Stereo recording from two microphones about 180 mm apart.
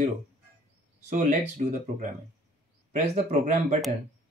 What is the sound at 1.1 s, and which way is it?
Speech, 40° right (ahead or behind).